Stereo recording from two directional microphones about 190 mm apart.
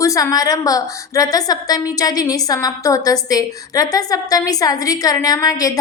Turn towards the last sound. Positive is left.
turn(degrees=20)  # may be behind; listen again after turning